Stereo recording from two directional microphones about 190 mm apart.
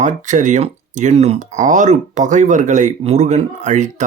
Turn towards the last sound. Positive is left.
turn(degrees=-40)  # may be behind; listen again after turning